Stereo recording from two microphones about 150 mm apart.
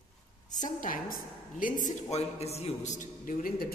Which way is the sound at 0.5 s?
60° left (ahead or behind).